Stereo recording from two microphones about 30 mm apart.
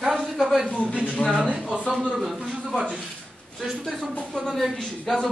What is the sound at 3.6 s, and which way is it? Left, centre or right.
Speech, centre.